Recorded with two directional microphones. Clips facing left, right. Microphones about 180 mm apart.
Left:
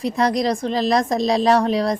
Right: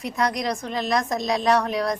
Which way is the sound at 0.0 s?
30° left (ahead or behind).